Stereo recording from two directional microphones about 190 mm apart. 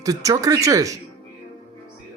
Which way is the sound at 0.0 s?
15° right (ahead or behind).